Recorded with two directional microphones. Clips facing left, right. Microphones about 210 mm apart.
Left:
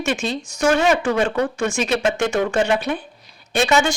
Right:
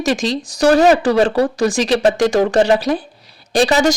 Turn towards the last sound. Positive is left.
turn(degrees=-35)  # may be behind; listen again after turning